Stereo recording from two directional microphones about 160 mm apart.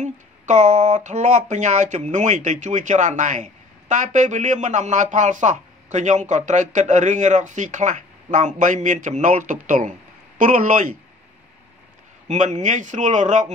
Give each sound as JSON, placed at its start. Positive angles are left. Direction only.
{"t": 0.0, "sound": "speech", "side_deg": -45}
{"t": 12.3, "sound": "speech", "side_deg": -45}